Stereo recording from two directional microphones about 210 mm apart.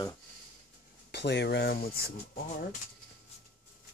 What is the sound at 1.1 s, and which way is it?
Speech, 55° left (ahead or behind).